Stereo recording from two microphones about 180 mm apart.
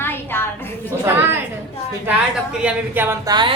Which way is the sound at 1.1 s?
10° right (ahead or behind).